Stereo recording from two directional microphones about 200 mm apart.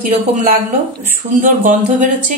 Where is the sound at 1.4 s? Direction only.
40° right (ahead or behind).